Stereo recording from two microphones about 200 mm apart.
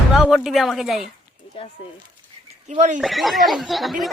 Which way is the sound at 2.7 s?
35° right (ahead or behind).